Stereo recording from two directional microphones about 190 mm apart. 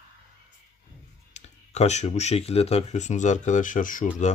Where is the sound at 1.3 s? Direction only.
35° left (ahead or behind).